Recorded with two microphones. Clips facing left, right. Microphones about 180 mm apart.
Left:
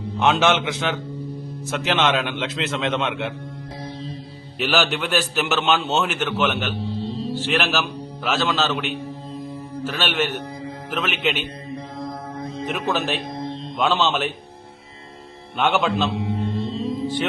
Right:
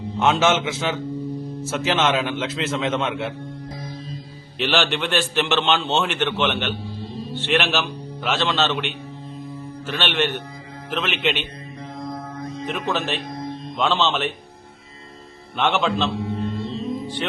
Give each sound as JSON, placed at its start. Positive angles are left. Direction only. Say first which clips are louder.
{"t": 0.2, "sound": "a man's voice", "louder": "even", "side_deg": 0}
{"t": 4.5, "sound": "a man's voice", "louder": "even", "side_deg": 5}
{"t": 12.4, "sound": "music", "louder": "left 1 dB", "side_deg": 30}
{"t": 12.6, "sound": "a man's voice", "louder": "left 1 dB", "side_deg": 0}
{"t": 13.3, "sound": "music", "louder": "left 1 dB", "side_deg": 25}
{"t": 13.7, "sound": "a man's voice", "louder": "left 1 dB", "side_deg": 0}
{"t": 15.5, "sound": "a man's voice", "louder": "left 1 dB", "side_deg": 0}
{"t": 16.1, "sound": "music", "louder": "left 1 dB", "side_deg": 25}